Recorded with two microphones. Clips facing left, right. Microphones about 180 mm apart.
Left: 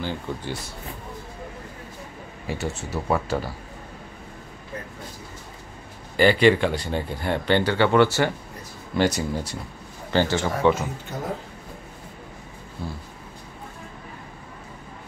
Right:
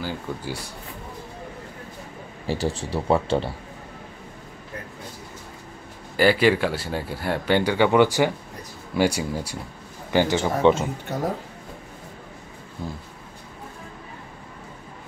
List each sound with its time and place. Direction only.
0.0 s speech: 10° right (ahead or behind)
2.4 s speech: 30° right (ahead or behind)
6.1 s speech: 5° right (ahead or behind)
12.8 s speech: 15° right (ahead or behind)